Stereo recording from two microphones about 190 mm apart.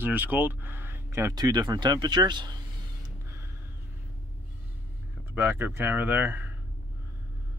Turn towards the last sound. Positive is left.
turn(degrees=-10)  # may be behind; listen again after turning